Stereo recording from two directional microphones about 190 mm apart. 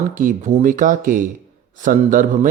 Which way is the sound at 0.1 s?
45° right (ahead or behind).